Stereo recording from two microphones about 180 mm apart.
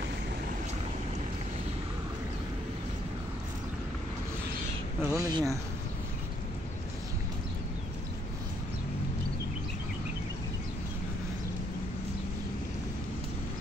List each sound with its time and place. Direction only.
5.0 s speech: 20° right (ahead or behind)